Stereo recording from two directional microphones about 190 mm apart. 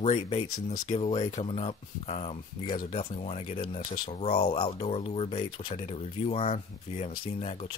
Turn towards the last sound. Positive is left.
turn(degrees=35)  # may be behind; listen again after turning